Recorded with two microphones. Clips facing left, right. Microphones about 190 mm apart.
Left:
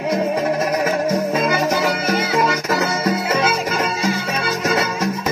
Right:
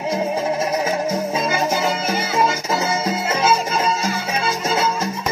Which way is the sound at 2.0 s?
60° left (ahead or behind).